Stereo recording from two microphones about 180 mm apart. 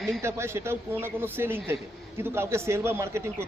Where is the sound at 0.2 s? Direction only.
15° right (ahead or behind).